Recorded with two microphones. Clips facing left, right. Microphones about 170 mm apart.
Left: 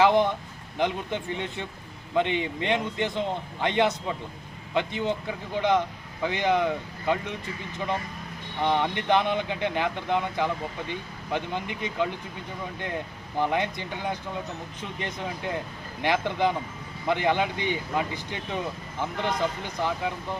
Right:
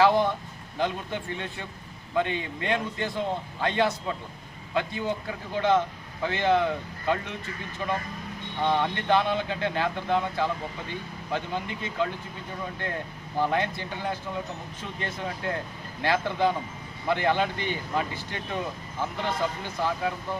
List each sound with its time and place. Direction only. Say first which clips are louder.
0.0 s a man's voice: left 1 dB; 20° left (ahead or behind)
13.4 s speech: even; 15° left (ahead or behind)